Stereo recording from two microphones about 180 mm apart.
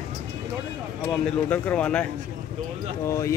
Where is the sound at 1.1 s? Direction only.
5° left (ahead or behind).